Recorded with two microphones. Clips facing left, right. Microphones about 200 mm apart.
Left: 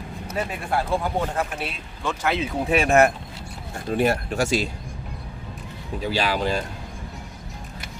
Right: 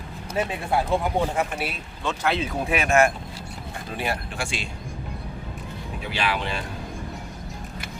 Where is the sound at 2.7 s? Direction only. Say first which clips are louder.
Left 3 dB; 35° left (ahead or behind).